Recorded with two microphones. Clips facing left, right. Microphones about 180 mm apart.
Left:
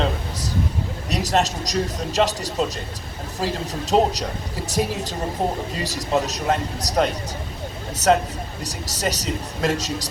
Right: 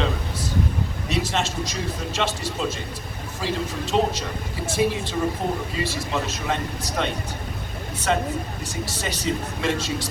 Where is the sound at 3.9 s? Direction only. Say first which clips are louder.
Left 4 dB; 40° left (ahead or behind).